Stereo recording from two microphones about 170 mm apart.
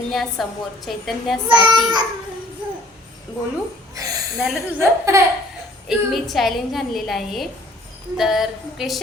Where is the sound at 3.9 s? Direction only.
20° right (ahead or behind).